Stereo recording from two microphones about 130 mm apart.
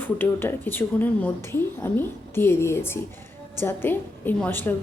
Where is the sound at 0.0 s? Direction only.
15° left (ahead or behind).